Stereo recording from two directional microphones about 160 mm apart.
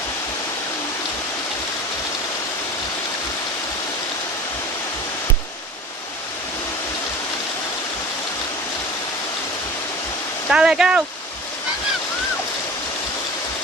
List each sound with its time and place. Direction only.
10.5 s speech: 5° right (ahead or behind)